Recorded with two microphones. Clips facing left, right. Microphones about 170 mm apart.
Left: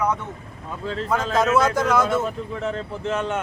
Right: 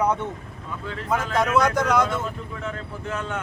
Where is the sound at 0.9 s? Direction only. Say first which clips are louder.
Left 3 dB; 20° left (ahead or behind).